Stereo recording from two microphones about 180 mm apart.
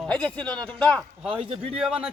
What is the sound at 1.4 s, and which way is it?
Speech, 30° right (ahead or behind).